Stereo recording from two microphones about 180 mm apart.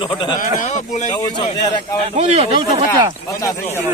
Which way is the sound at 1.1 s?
25° left (ahead or behind).